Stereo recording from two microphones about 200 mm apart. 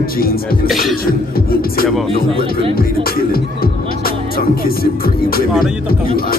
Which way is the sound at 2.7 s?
50° left (ahead or behind).